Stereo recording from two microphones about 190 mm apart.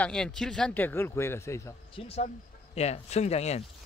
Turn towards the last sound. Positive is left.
turn(degrees=35)  # may be behind; listen again after turning